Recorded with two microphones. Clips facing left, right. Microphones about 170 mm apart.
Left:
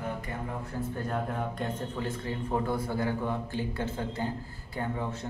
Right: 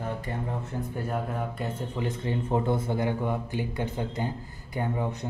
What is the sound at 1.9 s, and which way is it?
Speech, 20° right (ahead or behind).